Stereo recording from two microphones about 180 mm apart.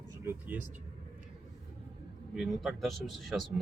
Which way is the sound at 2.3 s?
Centre (ahead or behind).